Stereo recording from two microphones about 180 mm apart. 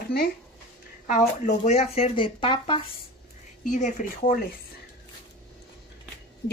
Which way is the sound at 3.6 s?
45° left (ahead or behind).